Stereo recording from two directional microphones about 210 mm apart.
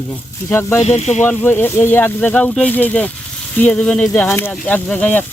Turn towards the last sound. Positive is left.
turn(degrees=10)  # may be behind; listen again after turning